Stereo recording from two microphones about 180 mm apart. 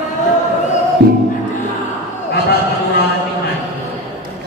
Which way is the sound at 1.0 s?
65° right (ahead or behind).